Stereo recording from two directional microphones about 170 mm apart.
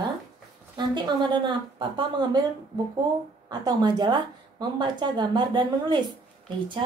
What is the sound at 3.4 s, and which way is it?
Speech, 25° right (ahead or behind).